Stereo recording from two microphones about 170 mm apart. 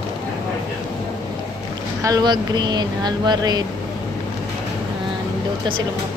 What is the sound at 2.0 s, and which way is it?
Speech, 25° right (ahead or behind).